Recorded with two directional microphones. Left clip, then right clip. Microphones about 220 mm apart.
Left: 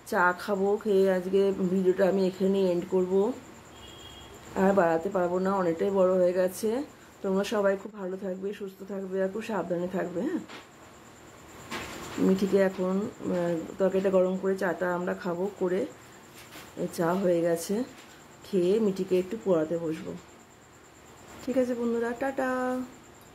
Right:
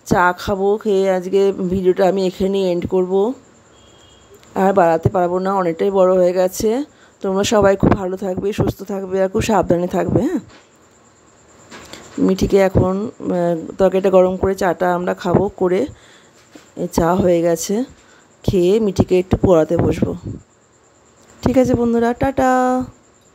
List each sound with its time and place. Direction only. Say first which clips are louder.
0.0 s speech: right 10 dB; 40° right (ahead or behind)
4.6 s speech: right 10 dB; 40° right (ahead or behind)
12.3 s speech: right 10 dB; 45° right (ahead or behind)
16.9 s speech: right 12 dB; 40° right (ahead or behind)
21.4 s speech: right 13 dB; 40° right (ahead or behind)